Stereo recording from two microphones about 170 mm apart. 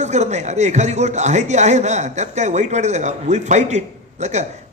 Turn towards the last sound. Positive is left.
turn(degrees=-40)  # may be behind; listen again after turning